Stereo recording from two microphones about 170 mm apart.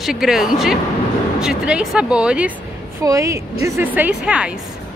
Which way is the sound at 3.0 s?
20° right (ahead or behind).